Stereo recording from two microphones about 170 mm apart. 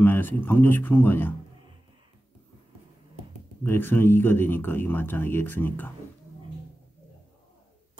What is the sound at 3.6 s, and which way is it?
Speech, 10° left (ahead or behind).